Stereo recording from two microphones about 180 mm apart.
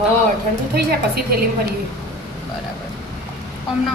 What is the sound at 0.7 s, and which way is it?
Speech, 60° right (ahead or behind).